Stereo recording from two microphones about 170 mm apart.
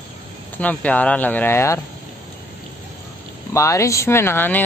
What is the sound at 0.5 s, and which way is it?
Speech, 10° left (ahead or behind).